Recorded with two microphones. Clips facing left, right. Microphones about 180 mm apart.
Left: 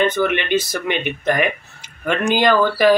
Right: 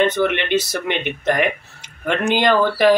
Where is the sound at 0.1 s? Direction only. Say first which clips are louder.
Even; 25° right (ahead or behind).